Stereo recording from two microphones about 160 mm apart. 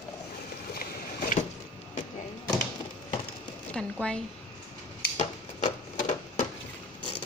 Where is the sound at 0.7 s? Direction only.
70° left (ahead or behind).